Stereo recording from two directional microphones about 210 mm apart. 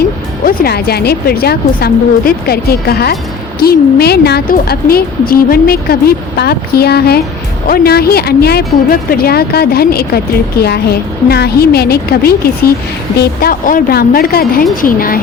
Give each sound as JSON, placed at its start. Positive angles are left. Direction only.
{"t": 0.4, "sound": "a woman's voice", "side_deg": 45}
{"t": 11.3, "sound": "a woman's voice", "side_deg": 50}